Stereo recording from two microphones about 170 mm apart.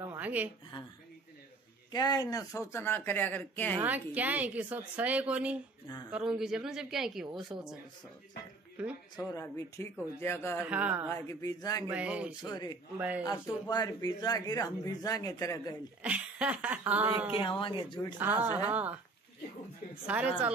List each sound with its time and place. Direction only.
0.1 s a sound: 10° right (ahead or behind)
1.9 s speech: 25° left (ahead or behind)
3.8 s a woman's voice: 10° right (ahead or behind)
8.8 s speech: 5° right (ahead or behind)
9.1 s speech: 20° left (ahead or behind)
10.6 s speech: 10° right (ahead or behind)
11.1 s speech: 15° left (ahead or behind)
11.9 s speech: 5° right (ahead or behind)
12.4 s speech: 25° left (ahead or behind)
16.0 s speech: 10° right (ahead or behind)
17.3 s speech: 30° left (ahead or behind)
18.1 s speech: 10° right (ahead or behind)
20.1 s speech: 10° right (ahead or behind)